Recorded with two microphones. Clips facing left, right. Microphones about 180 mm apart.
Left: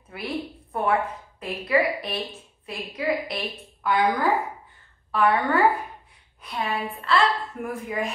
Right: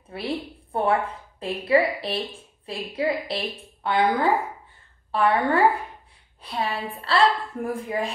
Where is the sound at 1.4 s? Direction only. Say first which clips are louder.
Right 2 dB; 30° right (ahead or behind).